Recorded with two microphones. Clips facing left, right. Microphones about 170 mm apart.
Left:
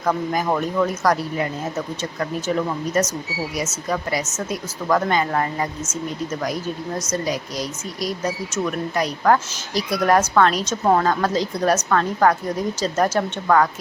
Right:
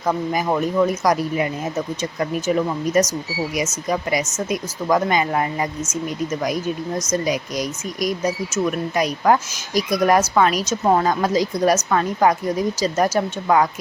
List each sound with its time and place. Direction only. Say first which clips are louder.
0.0 s a woman's voice: even; 10° right (ahead or behind)
2.6 s a woman's voice: right 3 dB; 10° right (ahead or behind)
7.3 s a woman's voice: right 3 dB; 15° right (ahead or behind)